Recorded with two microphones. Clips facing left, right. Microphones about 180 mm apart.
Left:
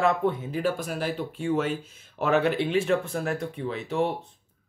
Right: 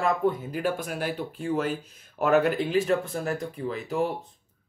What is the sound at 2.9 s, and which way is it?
Speech, centre (ahead or behind).